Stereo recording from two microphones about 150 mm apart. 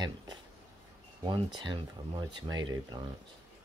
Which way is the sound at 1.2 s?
35° right (ahead or behind).